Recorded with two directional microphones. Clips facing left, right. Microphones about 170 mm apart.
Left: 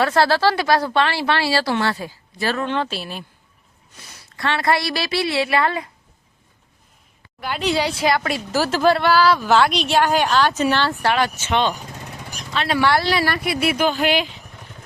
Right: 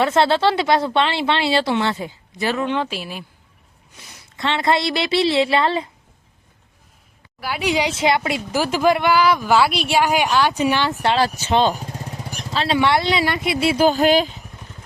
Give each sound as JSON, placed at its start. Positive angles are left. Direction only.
{"t": 0.0, "sound": "speech", "side_deg": -20}
{"t": 7.4, "sound": "speech", "side_deg": -10}
{"t": 11.3, "sound": "speech", "side_deg": -35}